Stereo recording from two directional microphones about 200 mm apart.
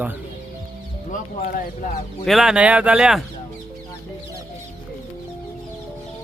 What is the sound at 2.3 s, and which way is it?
Speech, centre (ahead or behind).